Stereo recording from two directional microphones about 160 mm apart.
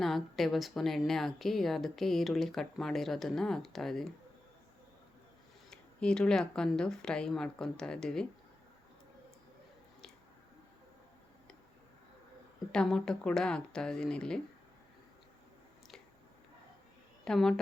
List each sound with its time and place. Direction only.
0.0 s a woman's voice: centre (ahead or behind)
5.7 s a woman's voice: 5° left (ahead or behind)
12.7 s a woman's voice: 5° left (ahead or behind)
17.2 s a woman's voice: 5° left (ahead or behind)